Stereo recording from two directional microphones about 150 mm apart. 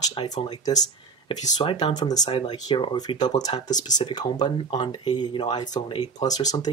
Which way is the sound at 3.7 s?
55° left (ahead or behind).